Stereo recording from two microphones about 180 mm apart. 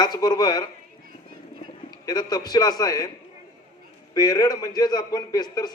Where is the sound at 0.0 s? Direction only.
20° left (ahead or behind).